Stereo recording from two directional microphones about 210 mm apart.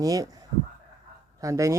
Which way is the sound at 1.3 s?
15° right (ahead or behind).